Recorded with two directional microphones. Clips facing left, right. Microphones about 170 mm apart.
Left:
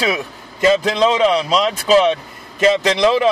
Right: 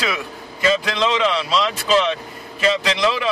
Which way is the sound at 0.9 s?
40° left (ahead or behind).